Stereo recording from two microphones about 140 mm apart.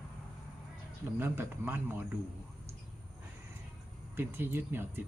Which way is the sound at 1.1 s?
15° right (ahead or behind).